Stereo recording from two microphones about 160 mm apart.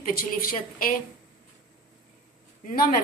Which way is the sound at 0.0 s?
60° left (ahead or behind).